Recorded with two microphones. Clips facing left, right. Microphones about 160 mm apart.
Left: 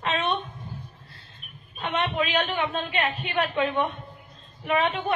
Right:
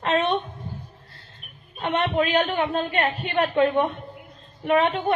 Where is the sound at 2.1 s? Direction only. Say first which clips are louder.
Right 4 dB; 50° right (ahead or behind).